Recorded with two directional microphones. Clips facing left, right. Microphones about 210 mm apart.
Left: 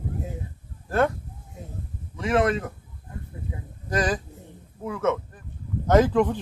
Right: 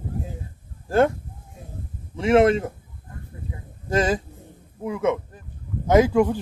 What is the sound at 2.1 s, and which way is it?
Speech, 25° right (ahead or behind).